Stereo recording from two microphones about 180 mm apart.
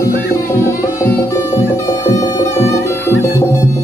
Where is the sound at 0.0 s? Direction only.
15° left (ahead or behind).